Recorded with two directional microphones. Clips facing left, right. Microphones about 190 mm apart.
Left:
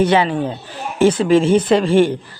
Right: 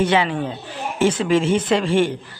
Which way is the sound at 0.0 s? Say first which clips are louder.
Left 4 dB; 35° left (ahead or behind).